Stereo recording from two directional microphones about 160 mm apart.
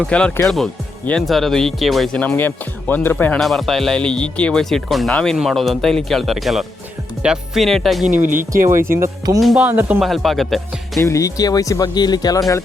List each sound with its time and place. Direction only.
0.0 s speech: 5° left (ahead or behind)
2.2 s speech: 10° left (ahead or behind)
8.0 s speech: 55° right (ahead or behind)
9.0 s speech: 20° right (ahead or behind)
9.4 s speech: centre (ahead or behind)
9.6 s speech: 10° right (ahead or behind)
10.0 s speech: centre (ahead or behind)
11.0 s speech: 20° left (ahead or behind)